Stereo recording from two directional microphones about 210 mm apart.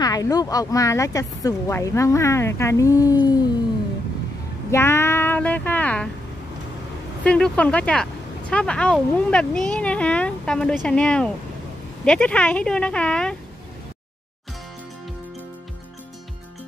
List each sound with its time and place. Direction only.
0.0 s speech: 15° left (ahead or behind)
4.6 s speech: 10° left (ahead or behind)
7.2 s speech: 5° left (ahead or behind)